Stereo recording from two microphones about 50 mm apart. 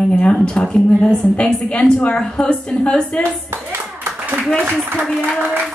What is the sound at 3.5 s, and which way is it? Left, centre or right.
Hands, right.